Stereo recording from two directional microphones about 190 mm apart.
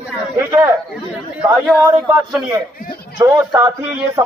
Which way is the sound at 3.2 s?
15° right (ahead or behind).